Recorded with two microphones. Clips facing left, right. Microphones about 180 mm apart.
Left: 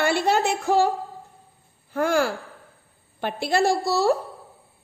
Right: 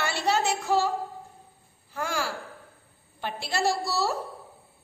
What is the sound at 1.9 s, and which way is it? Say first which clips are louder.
A woman's voice: left 9 dB; 55° left (ahead or behind).